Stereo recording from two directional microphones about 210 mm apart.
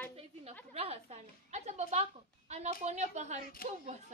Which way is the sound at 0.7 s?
30° right (ahead or behind).